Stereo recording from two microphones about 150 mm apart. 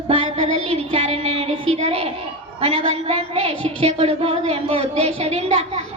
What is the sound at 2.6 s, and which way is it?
A woman's voice, 40° right (ahead or behind).